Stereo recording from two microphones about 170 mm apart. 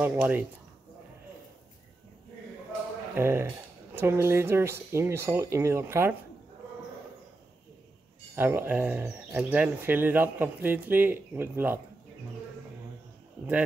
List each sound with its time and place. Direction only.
0.0 s speech: 10° right (ahead or behind)
3.2 s speech: 15° right (ahead or behind)
8.4 s speech: 15° right (ahead or behind)